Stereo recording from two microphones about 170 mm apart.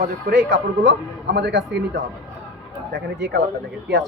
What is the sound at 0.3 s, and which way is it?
Speech, 90° right.